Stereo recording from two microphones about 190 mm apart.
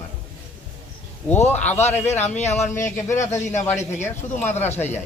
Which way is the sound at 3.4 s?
35° left (ahead or behind).